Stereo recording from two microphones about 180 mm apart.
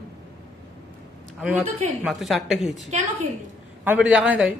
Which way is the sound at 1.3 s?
5° right (ahead or behind).